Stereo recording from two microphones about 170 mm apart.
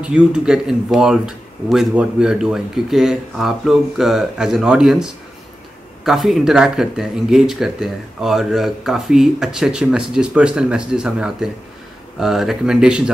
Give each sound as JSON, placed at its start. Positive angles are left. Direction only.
{"t": 0.0, "sound": "speech", "side_deg": -5}